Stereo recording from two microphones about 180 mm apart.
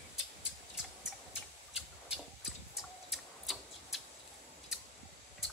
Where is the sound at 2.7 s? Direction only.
Centre (ahead or behind).